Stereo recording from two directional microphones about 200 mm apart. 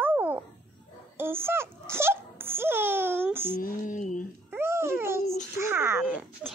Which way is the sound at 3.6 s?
40° left (ahead or behind).